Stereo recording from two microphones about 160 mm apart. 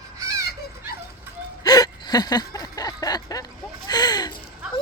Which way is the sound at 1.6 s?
25° left (ahead or behind).